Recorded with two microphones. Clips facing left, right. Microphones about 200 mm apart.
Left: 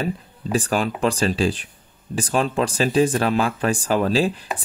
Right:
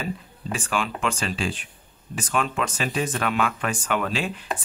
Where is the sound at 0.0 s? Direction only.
35° left (ahead or behind).